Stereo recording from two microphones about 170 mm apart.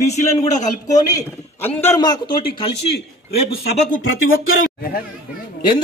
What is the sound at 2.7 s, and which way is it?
Speech, 80° left.